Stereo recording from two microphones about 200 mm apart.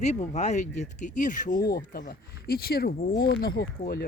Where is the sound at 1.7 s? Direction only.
50° left (ahead or behind).